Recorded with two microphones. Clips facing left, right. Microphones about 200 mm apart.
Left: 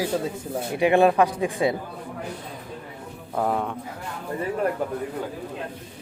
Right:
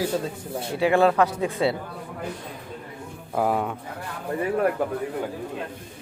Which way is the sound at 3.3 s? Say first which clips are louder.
Right 1 dB; 5° right (ahead or behind).